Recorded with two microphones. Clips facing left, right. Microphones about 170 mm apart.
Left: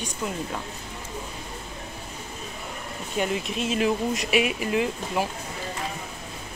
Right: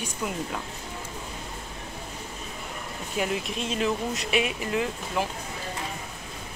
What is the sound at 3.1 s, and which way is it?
Speech, centre (ahead or behind).